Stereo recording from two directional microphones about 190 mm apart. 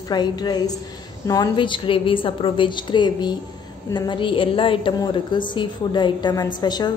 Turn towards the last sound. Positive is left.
turn(degrees=20)  # may be behind; listen again after turning